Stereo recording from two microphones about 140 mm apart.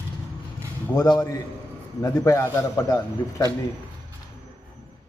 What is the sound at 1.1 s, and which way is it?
A man's voice, 25° left (ahead or behind).